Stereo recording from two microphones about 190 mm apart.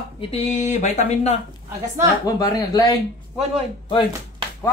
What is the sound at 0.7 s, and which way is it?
Speech, 35° left (ahead or behind).